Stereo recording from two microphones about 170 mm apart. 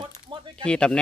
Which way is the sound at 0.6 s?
5° left (ahead or behind).